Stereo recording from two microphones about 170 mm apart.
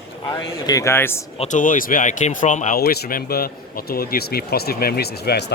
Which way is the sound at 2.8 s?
60° left (ahead or behind).